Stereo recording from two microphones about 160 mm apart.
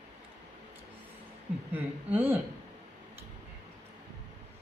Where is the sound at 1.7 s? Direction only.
15° right (ahead or behind).